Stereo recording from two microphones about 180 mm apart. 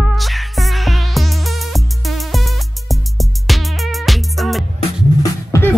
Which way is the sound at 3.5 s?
Centre (ahead or behind).